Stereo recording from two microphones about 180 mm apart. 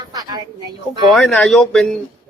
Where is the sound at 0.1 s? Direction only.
20° right (ahead or behind).